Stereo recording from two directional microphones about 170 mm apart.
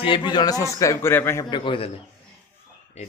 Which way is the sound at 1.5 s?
30° left (ahead or behind).